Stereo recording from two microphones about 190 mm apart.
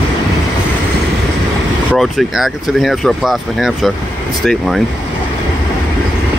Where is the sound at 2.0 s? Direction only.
Centre (ahead or behind).